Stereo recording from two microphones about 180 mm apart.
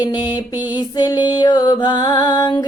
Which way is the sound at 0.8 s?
25° left (ahead or behind).